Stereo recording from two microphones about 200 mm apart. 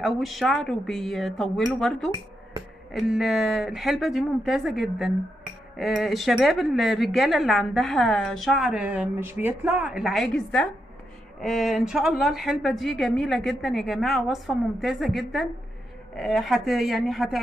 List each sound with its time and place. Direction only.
0.0 s speech: centre (ahead or behind)